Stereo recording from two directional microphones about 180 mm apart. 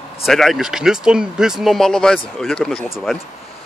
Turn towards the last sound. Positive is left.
turn(degrees=0)  # may be behind; listen again after turning